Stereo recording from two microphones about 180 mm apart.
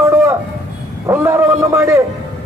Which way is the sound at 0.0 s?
15° right (ahead or behind).